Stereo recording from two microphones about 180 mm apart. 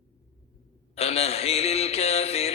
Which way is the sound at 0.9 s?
35° left (ahead or behind).